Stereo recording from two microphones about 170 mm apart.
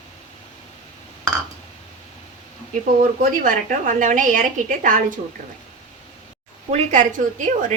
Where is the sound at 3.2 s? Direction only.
55° right (ahead or behind).